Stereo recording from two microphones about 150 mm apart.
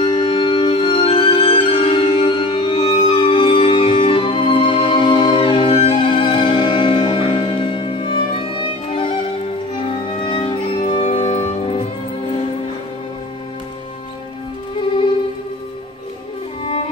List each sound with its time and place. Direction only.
0.0 s music: 30° left (ahead or behind)
10.2 s music: 35° left (ahead or behind)